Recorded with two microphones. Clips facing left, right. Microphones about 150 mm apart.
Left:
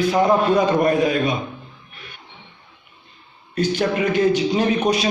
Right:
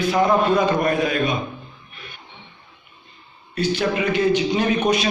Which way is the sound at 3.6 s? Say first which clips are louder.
Left 1 dB; 45° left (ahead or behind).